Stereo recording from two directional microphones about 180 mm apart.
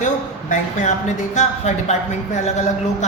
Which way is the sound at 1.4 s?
40° left (ahead or behind).